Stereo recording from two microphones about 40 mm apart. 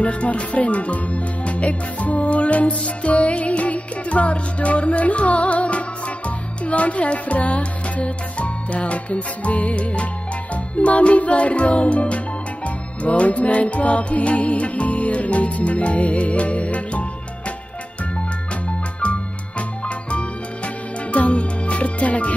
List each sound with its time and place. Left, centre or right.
0.0 s speech: left
10.5 s music: left
20.1 s music: left